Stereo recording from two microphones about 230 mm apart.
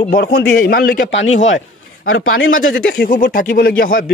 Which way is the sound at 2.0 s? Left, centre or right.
Left.